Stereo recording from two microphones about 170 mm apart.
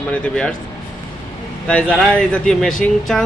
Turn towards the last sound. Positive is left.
turn(degrees=5)  # may be behind; listen again after turning